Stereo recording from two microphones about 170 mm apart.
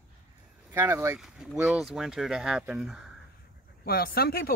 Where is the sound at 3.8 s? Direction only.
65° left (ahead or behind).